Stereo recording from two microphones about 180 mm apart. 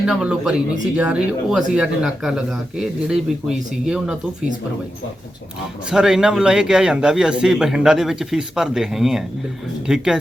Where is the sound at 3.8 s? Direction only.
5° right (ahead or behind).